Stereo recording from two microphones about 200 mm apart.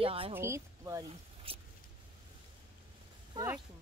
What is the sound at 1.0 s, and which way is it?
Speech, 30° right (ahead or behind).